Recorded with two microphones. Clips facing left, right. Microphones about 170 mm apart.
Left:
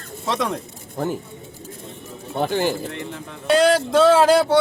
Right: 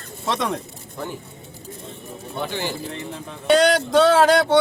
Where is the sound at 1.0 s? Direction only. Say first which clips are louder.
Left 7 dB; 45° left (ahead or behind).